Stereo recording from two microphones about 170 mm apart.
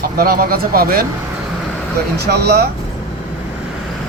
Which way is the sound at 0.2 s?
60° right (ahead or behind).